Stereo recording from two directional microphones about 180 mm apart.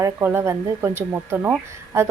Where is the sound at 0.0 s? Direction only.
15° right (ahead or behind).